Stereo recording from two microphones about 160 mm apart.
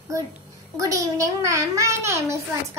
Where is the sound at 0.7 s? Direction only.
20° right (ahead or behind).